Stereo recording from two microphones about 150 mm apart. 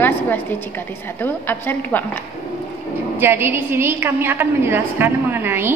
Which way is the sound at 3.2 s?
15° right (ahead or behind).